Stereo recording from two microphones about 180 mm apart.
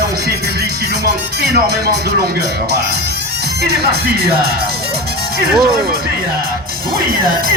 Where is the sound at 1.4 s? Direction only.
65° right (ahead or behind).